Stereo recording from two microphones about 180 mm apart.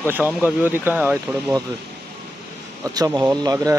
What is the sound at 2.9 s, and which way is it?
Speech, 20° right (ahead or behind).